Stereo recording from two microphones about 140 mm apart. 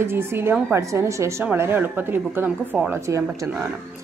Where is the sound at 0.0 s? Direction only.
15° right (ahead or behind).